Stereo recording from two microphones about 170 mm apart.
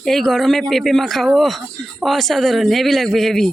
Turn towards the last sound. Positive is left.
turn(degrees=0)  # may be behind; listen again after turning